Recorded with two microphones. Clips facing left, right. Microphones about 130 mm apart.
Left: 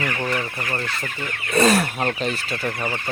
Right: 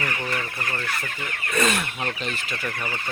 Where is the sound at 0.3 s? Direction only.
20° left (ahead or behind).